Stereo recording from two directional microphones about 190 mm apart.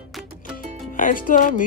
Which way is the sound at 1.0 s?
45° left (ahead or behind).